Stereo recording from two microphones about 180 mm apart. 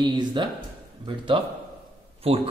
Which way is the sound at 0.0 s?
25° right (ahead or behind).